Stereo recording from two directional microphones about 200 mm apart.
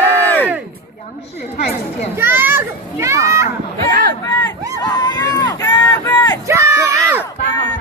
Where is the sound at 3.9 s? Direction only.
50° right (ahead or behind).